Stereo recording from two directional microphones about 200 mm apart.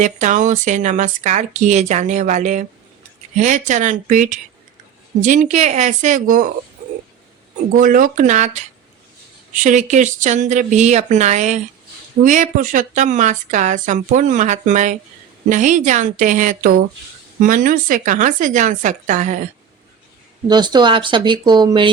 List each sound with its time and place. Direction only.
0.0 s a woman's voice: 35° right (ahead or behind)
7.7 s a woman's voice: 45° right (ahead or behind)
20.5 s speech: 20° right (ahead or behind)